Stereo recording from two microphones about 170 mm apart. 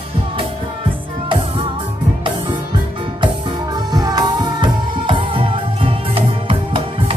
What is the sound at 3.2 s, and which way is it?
Music, 25° right (ahead or behind).